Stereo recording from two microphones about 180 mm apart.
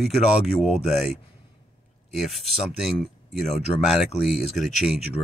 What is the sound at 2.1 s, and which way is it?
Speech, centre (ahead or behind).